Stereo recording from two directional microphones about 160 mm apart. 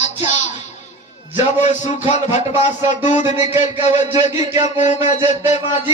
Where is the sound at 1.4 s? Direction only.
45° left (ahead or behind).